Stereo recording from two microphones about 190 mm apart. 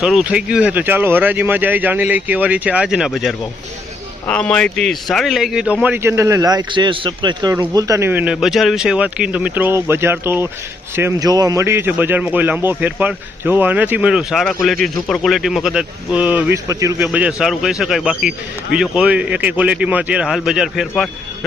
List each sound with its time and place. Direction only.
0.0 s a man's voice: 5° right (ahead or behind)